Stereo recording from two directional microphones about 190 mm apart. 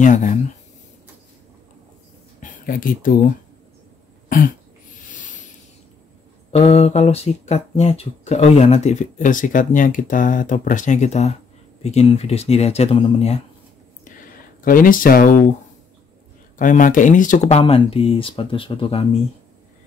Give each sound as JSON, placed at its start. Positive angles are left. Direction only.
{"t": 0.0, "sound": "speech", "side_deg": 40}
{"t": 2.4, "sound": "speech", "side_deg": 50}
{"t": 5.0, "sound": "a sound", "side_deg": 45}
{"t": 6.5, "sound": "speech", "side_deg": 35}
{"t": 14.6, "sound": "speech", "side_deg": 45}
{"t": 16.5, "sound": "speech", "side_deg": 45}